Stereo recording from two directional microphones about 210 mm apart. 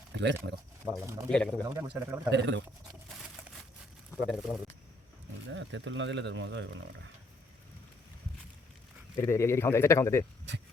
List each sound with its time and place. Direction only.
0.1 s speech: 55° right (ahead or behind)
0.9 s speech: 10° right (ahead or behind)
1.3 s speech: 5° left (ahead or behind)
1.6 s speech: 15° right (ahead or behind)
4.2 s speech: centre (ahead or behind)
5.5 s speech: 60° right (ahead or behind)
9.1 s speech: 10° left (ahead or behind)